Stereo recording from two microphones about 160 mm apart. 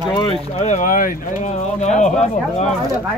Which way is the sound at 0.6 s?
50° left (ahead or behind).